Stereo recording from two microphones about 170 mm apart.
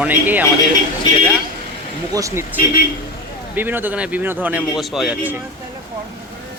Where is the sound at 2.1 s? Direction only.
15° right (ahead or behind).